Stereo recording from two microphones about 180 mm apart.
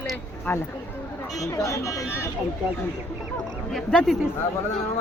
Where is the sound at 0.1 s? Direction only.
10° left (ahead or behind).